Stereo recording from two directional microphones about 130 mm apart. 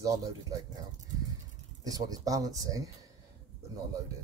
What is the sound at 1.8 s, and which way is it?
Speech, 30° right (ahead or behind).